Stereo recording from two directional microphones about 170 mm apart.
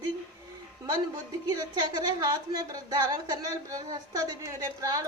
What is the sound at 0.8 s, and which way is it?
Speech, 20° right (ahead or behind).